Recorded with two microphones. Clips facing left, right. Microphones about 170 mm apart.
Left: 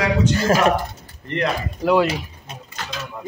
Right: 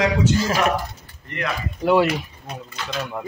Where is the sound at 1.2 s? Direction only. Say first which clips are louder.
Left 5 dB; 35° left (ahead or behind).